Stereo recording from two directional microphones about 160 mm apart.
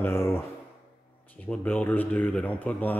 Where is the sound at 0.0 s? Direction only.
15° left (ahead or behind).